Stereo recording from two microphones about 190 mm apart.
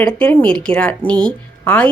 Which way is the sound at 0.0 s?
5° left (ahead or behind).